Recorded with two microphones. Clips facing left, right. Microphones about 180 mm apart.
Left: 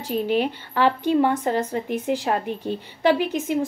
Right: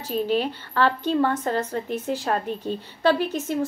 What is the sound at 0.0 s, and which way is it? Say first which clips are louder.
A woman's voice: left 1 dB; 15° left (ahead or behind).